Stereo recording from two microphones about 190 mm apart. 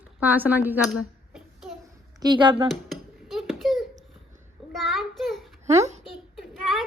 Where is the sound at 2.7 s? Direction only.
Centre (ahead or behind).